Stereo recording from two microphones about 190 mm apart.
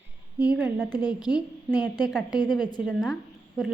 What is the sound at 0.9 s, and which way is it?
A woman's voice, 20° left (ahead or behind).